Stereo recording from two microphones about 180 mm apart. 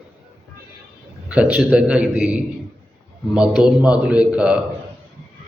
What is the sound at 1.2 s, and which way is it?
A man's voice, 5° right (ahead or behind).